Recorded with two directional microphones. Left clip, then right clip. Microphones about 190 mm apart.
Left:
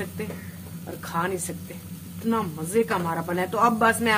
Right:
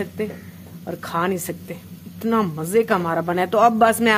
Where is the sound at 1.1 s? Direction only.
55° right (ahead or behind).